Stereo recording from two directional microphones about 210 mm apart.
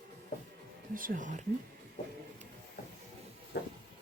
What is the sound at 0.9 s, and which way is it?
Speech, 40° right (ahead or behind).